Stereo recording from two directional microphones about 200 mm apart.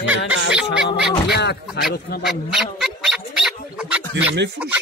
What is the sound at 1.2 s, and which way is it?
Speech, 55° left (ahead or behind).